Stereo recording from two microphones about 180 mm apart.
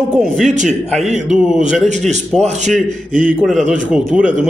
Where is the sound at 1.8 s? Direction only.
40° right (ahead or behind).